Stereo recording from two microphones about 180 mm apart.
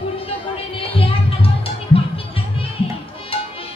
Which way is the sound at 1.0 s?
30° left (ahead or behind).